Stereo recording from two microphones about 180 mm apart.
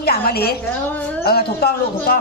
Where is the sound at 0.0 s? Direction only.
60° left (ahead or behind).